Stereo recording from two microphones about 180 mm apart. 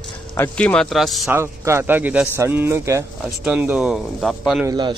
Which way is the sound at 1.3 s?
15° right (ahead or behind).